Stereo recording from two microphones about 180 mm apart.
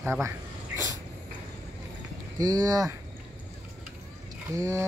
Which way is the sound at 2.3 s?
20° right (ahead or behind).